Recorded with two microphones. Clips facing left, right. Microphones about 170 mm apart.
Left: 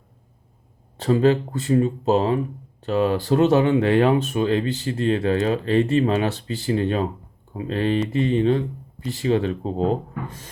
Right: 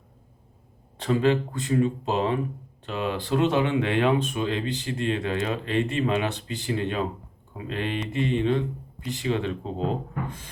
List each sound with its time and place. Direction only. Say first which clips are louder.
0.9 s speech: left 4 dB; 35° left (ahead or behind)